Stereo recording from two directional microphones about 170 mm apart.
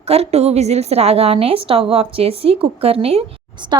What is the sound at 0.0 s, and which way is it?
A woman's voice, 35° right (ahead or behind).